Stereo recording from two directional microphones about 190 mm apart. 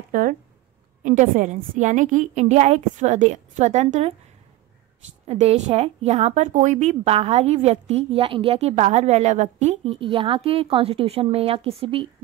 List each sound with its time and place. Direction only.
0.1 s speech: 50° right (ahead or behind)
5.2 s speech: 35° right (ahead or behind)